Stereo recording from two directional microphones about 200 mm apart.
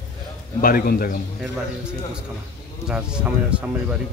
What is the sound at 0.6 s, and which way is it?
Speech, 50° left (ahead or behind).